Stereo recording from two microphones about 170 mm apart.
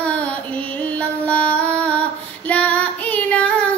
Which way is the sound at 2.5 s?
10° left (ahead or behind).